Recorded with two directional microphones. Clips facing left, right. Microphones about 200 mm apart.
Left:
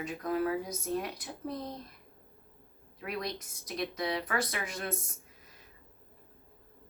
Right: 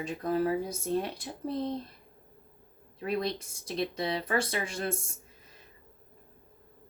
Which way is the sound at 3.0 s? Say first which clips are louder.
Right 6 dB; 30° right (ahead or behind).